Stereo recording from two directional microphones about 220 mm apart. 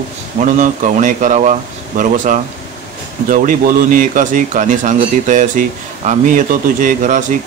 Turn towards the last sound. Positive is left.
turn(degrees=-35)  # may be behind; listen again after turning